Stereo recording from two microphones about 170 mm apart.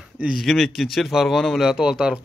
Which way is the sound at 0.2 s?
Centre (ahead or behind).